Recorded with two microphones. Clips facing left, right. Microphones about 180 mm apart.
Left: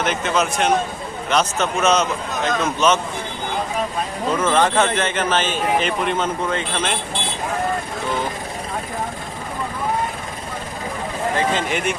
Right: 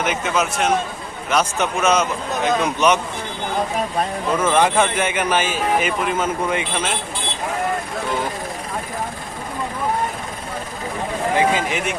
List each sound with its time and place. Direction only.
0.0 s speech: 10° right (ahead or behind)
4.4 s speech: 10° right (ahead or behind)
11.3 s speech: 5° right (ahead or behind)